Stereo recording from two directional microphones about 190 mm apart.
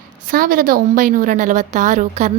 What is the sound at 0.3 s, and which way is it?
A woman's voice, 45° right (ahead or behind).